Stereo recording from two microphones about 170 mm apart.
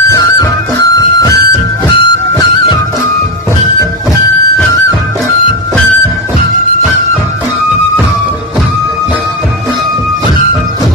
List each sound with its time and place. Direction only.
0.1 s music: 20° left (ahead or behind)
1.3 s music: 70° right (ahead or behind)